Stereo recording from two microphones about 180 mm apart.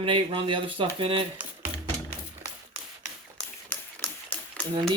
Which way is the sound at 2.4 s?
10° right (ahead or behind).